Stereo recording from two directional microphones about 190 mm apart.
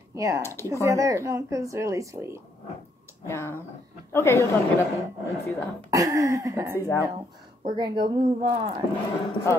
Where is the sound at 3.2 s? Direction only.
10° left (ahead or behind).